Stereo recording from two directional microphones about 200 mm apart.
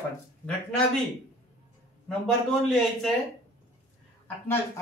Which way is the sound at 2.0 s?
5° left (ahead or behind).